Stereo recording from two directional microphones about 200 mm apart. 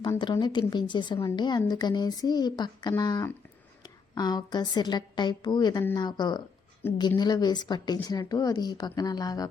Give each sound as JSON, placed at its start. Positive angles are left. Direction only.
{"t": 0.0, "sound": "a woman's voice", "side_deg": 20}